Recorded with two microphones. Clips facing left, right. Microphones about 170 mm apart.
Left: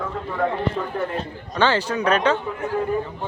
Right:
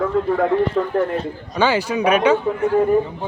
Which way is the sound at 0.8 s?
65° right (ahead or behind).